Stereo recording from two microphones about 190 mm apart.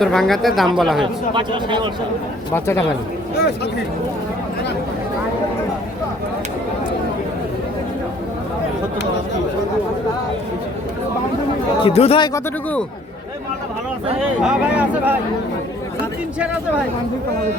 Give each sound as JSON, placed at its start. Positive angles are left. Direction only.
{"t": 0.0, "sound": "speech", "side_deg": 0}
{"t": 1.3, "sound": "a man's voice", "side_deg": -25}
{"t": 11.8, "sound": "speech", "side_deg": 30}
{"t": 14.4, "sound": "speech", "side_deg": -5}